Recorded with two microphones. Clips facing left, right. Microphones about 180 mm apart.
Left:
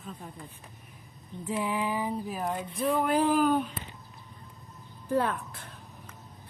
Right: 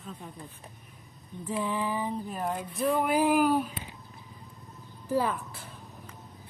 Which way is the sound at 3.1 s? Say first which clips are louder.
Even; 10° right (ahead or behind).